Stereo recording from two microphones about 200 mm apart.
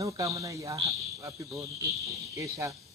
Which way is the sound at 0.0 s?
15° right (ahead or behind).